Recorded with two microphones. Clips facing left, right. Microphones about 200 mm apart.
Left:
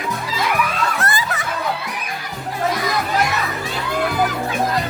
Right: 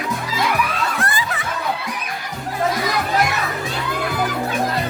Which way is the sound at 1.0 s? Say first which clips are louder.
Left 1 dB; 40° left (ahead or behind).